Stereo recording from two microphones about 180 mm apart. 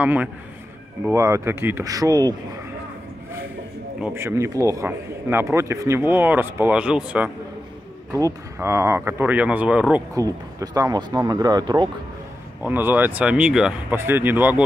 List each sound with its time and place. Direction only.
0.0 s speech: 10° right (ahead or behind)
4.0 s speech: 15° right (ahead or behind)
8.1 s speech: 20° right (ahead or behind)
10.1 s speech: 20° right (ahead or behind)
12.6 s speech: 10° right (ahead or behind)